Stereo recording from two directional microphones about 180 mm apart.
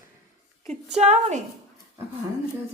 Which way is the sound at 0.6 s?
40° right (ahead or behind).